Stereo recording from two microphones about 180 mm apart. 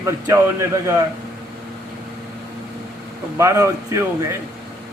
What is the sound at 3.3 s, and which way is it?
Speech, 15° right (ahead or behind).